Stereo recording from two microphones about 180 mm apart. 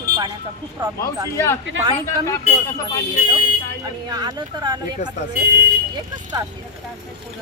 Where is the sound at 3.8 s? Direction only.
20° right (ahead or behind).